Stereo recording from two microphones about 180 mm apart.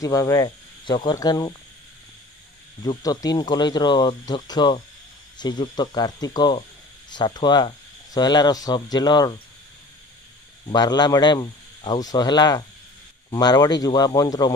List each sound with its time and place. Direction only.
0.0 s speech: 20° left (ahead or behind)
2.8 s speech: 20° left (ahead or behind)
10.7 s speech: 25° left (ahead or behind)